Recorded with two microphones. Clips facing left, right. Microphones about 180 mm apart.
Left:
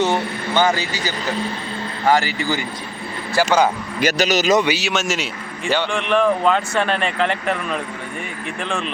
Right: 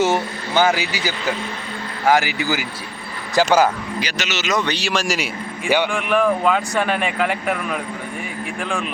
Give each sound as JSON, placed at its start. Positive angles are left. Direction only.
{"t": 0.0, "sound": "speech", "side_deg": -10}
{"t": 4.0, "sound": "a man's voice", "side_deg": 40}
{"t": 4.6, "sound": "speech", "side_deg": 5}
{"t": 5.2, "sound": "a man's voice", "side_deg": -10}